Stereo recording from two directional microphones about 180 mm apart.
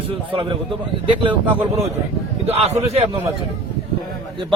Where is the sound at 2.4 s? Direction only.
35° right (ahead or behind).